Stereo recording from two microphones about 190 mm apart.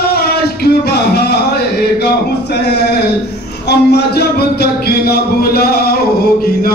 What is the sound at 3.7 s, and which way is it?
Music, 60° left (ahead or behind).